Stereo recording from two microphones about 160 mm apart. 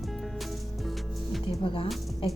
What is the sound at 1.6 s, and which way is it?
Speech, 35° left (ahead or behind).